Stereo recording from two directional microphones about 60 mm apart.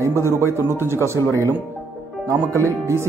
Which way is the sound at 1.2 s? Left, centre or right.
Left.